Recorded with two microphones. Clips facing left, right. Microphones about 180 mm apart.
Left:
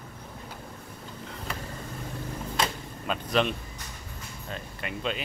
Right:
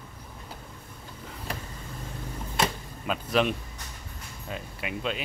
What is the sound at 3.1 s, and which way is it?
Speech, 5° right (ahead or behind).